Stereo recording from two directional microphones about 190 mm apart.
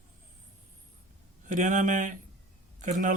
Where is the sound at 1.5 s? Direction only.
40° right (ahead or behind).